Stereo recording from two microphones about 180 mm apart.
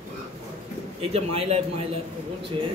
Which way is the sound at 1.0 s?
35° right (ahead or behind).